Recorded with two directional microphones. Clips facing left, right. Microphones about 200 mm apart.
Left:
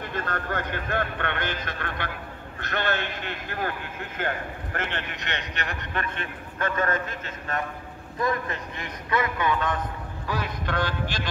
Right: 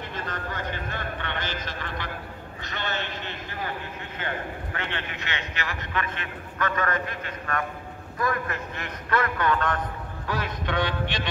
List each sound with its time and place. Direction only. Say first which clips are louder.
0.1 s speech: left 6 dB; 55° left (ahead or behind)
4.7 s a man's voice: left 4 dB; 40° left (ahead or behind); by 10.9 s centre (ahead or behind)